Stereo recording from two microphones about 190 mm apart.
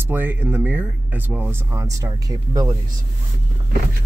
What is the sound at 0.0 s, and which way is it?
Speech, 10° right (ahead or behind).